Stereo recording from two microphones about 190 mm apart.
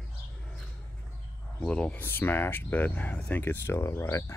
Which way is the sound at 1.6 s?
5° left (ahead or behind).